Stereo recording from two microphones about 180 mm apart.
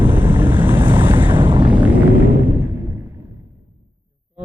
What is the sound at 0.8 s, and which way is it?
Waves, 25° right (ahead or behind).